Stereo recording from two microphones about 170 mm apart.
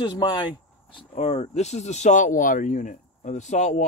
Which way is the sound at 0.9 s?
35° left (ahead or behind).